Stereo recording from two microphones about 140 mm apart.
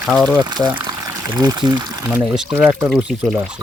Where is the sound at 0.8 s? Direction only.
30° right (ahead or behind).